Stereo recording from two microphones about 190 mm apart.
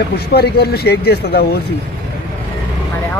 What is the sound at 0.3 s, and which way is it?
Speech, 55° left (ahead or behind).